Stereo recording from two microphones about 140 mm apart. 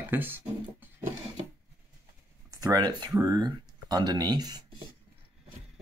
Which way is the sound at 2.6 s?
30° right (ahead or behind).